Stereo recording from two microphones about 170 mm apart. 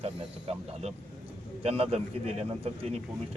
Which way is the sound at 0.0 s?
40° right (ahead or behind).